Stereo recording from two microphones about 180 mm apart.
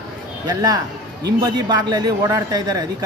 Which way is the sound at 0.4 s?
20° right (ahead or behind).